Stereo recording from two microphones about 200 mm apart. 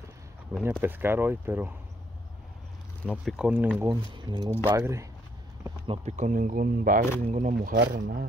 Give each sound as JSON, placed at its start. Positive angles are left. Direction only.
{"t": 0.5, "sound": "speech", "side_deg": -10}
{"t": 3.1, "sound": "speech", "side_deg": 0}
{"t": 3.9, "sound": "speech", "side_deg": -25}
{"t": 5.9, "sound": "speech", "side_deg": -35}
{"t": 7.7, "sound": "speech", "side_deg": -55}